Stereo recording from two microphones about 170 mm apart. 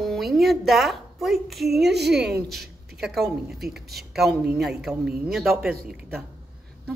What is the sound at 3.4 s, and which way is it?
A man's voice, centre (ahead or behind).